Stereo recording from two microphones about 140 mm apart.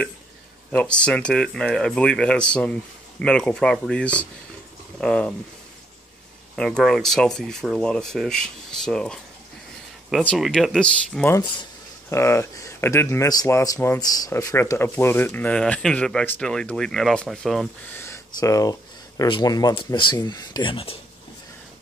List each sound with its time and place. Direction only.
0.7 s speech: 10° left (ahead or behind)
6.5 s speech: 5° left (ahead or behind)
10.2 s speech: 5° left (ahead or behind)
12.1 s speech: 20° left (ahead or behind); by 17.6 s centre (ahead or behind)
17.9 s speech: 20° left (ahead or behind); by 21.0 s 40° left (ahead or behind)